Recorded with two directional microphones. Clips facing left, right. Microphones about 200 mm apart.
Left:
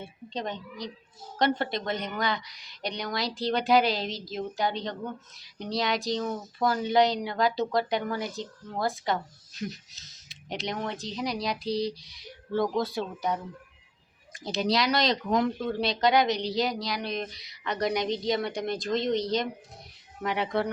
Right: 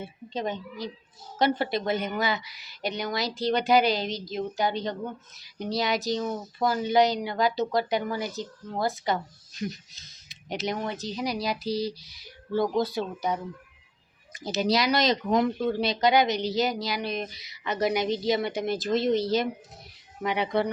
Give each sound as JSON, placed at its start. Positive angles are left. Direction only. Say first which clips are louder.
{"t": 0.0, "sound": "speech", "louder": "right 3 dB", "side_deg": -5}